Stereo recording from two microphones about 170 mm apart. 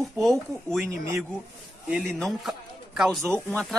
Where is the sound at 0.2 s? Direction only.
Centre (ahead or behind).